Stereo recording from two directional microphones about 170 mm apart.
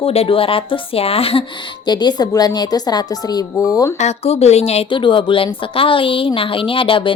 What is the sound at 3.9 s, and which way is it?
A woman's voice, 40° left (ahead or behind).